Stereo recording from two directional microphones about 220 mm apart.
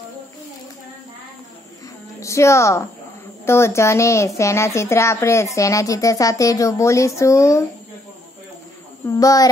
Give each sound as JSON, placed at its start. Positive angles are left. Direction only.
{"t": 2.1, "sound": "a woman's voice", "side_deg": 15}
{"t": 9.0, "sound": "a child's voice", "side_deg": 15}